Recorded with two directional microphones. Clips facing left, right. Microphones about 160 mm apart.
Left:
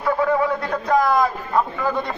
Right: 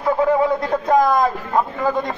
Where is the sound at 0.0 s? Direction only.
20° right (ahead or behind).